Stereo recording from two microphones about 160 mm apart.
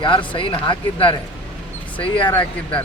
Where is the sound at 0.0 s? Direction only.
30° left (ahead or behind).